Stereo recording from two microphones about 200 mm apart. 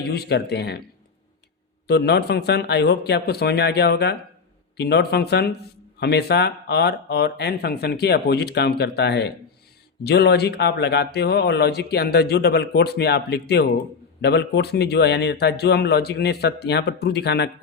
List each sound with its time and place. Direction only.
0.1 s speech: 55° left (ahead or behind)
1.9 s speech: 55° left (ahead or behind)